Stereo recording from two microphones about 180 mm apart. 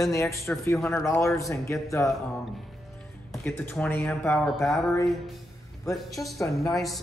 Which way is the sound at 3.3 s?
10° left (ahead or behind).